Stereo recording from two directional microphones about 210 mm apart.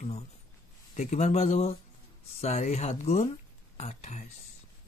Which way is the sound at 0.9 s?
30° left (ahead or behind).